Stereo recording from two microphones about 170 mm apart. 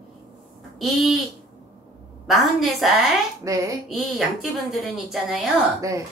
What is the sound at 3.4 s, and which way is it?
Speech, 20° right (ahead or behind).